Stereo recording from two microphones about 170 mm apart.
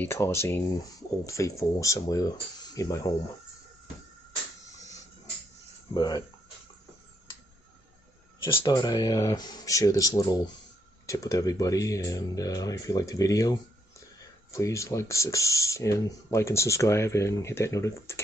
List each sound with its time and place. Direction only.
0.0 s speech: 15° left (ahead or behind)
5.9 s speech: 25° left (ahead or behind)
8.5 s speech: 20° left (ahead or behind)